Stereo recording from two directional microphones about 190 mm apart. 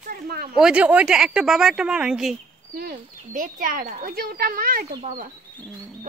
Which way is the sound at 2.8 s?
50° right (ahead or behind).